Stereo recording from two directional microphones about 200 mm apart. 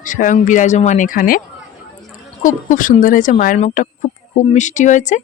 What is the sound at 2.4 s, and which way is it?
Speech, 40° left (ahead or behind).